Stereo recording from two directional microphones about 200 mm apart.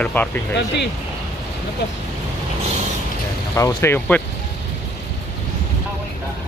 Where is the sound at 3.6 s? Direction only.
15° left (ahead or behind).